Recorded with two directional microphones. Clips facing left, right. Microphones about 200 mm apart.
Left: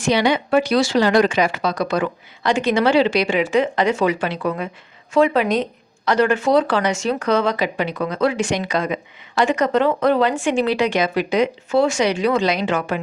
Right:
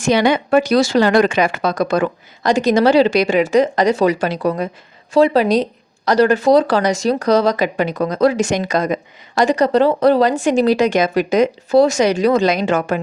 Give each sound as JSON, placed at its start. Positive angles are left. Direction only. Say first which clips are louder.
{"t": 0.0, "sound": "speech", "louder": "right 3 dB", "side_deg": -50}